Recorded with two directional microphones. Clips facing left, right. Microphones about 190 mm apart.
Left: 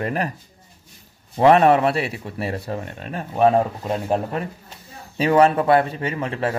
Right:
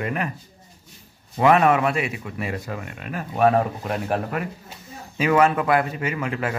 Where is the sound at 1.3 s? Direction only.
35° left (ahead or behind).